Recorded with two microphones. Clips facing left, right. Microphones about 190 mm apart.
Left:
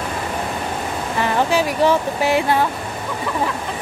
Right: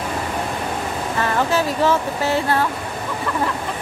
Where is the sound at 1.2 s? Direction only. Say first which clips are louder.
Left 2 dB; 15° left (ahead or behind).